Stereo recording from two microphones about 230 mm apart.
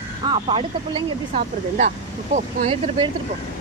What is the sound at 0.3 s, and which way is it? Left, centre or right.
Speech, right.